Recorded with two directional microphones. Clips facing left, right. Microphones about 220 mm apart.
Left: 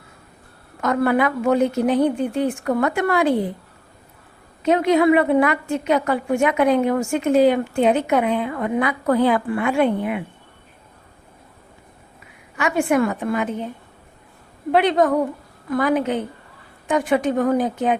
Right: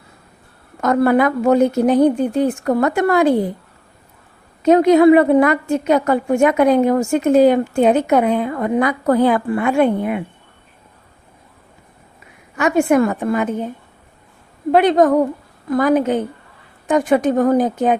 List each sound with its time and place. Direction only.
0.8 s a woman's voice: 40° right (ahead or behind)
4.6 s a woman's voice: 40° right (ahead or behind)
12.5 s a woman's voice: 45° right (ahead or behind)
14.7 s a woman's voice: 45° right (ahead or behind)